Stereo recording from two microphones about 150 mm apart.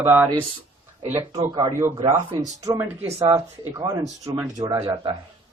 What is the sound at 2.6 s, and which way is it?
Speech, 20° right (ahead or behind).